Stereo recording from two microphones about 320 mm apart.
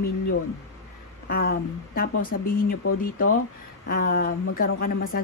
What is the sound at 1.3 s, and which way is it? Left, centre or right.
Speech, left.